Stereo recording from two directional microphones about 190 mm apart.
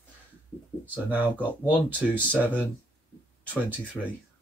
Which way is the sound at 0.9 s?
10° right (ahead or behind).